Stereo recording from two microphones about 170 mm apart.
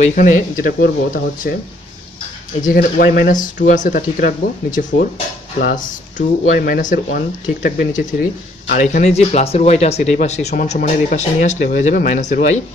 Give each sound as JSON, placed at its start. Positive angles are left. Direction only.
{"t": 0.0, "sound": "speech", "side_deg": 50}
{"t": 2.6, "sound": "speech", "side_deg": 55}
{"t": 8.8, "sound": "speech", "side_deg": 40}